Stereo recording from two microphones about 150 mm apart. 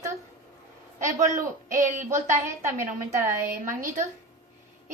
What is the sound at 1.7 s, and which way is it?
Speech, 55° right (ahead or behind).